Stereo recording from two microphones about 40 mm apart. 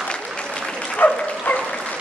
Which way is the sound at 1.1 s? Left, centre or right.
Left.